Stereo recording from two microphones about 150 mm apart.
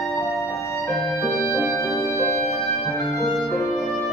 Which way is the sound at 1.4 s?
15° right (ahead or behind).